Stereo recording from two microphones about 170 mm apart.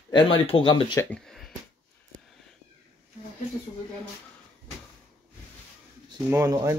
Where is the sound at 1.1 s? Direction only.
Centre (ahead or behind).